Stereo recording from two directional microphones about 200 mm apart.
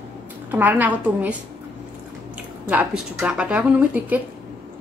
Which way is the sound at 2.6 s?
5° right (ahead or behind).